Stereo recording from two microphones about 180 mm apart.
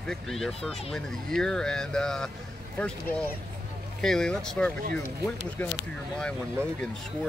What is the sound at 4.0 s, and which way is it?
Speech, centre (ahead or behind).